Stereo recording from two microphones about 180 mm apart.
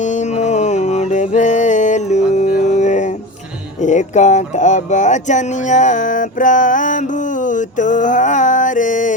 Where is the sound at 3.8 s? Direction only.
40° left (ahead or behind).